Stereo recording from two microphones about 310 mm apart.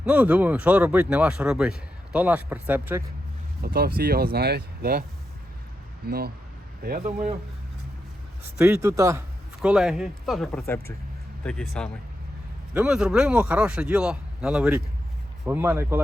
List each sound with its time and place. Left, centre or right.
0.0 s speech: centre
3.6 s speech: right
6.1 s speech: right
8.5 s speech: centre